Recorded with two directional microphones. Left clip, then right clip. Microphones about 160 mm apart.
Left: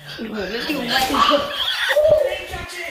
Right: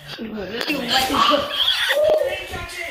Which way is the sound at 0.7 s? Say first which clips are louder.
Right 1 dB; centre (ahead or behind).